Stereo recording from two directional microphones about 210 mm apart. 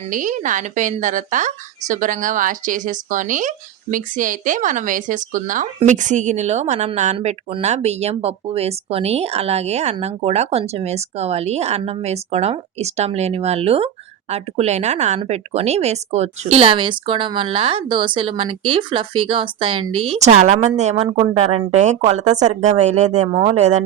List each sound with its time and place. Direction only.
0.1 s speech: 40° right (ahead or behind)